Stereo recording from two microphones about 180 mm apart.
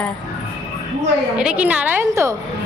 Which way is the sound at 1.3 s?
5° right (ahead or behind).